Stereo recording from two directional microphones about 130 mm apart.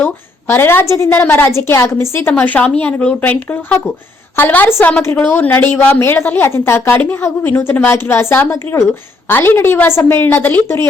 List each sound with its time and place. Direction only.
0.0 s a woman's voice: 20° left (ahead or behind)